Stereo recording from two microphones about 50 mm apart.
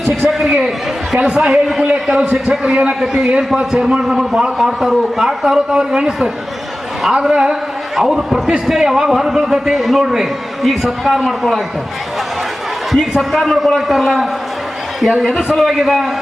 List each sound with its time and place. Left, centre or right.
0.2 s a man's voice: centre
12.9 s a man's voice: centre